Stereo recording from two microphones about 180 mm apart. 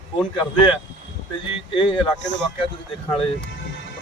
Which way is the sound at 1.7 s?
30° left (ahead or behind).